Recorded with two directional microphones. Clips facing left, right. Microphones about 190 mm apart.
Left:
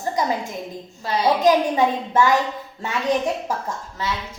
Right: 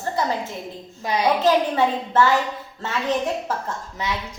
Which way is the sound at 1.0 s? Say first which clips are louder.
Even; 15° right (ahead or behind).